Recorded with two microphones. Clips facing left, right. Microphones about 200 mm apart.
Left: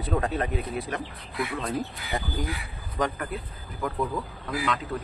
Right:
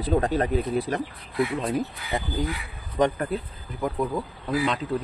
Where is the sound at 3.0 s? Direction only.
30° right (ahead or behind).